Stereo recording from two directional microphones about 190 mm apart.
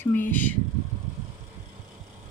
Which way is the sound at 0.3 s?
10° left (ahead or behind).